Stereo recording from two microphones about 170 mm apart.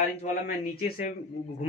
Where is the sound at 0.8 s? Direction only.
60° left (ahead or behind).